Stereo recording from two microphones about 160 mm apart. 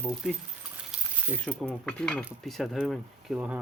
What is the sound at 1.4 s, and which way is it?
Speech, 5° left (ahead or behind).